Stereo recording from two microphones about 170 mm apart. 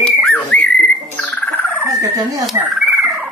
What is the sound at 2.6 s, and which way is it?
Fowl, 5° right (ahead or behind).